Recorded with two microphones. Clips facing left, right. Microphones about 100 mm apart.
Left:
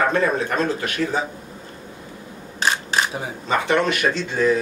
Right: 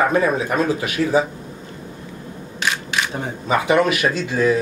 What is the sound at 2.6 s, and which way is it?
Single-lens reflex camera, 35° left (ahead or behind).